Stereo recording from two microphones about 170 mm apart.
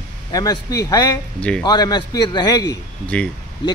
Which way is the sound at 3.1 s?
5° left (ahead or behind).